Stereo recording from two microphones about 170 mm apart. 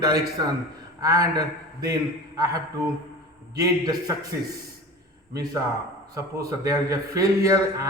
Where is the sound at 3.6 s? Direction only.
20° right (ahead or behind).